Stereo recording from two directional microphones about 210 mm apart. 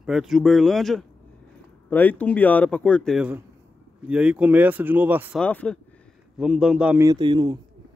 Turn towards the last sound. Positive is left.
turn(degrees=-20)  # may be behind; listen again after turning